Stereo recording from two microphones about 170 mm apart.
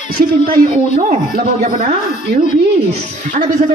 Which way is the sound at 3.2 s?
45° right (ahead or behind).